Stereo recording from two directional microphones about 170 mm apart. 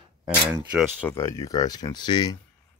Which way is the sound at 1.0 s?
15° left (ahead or behind).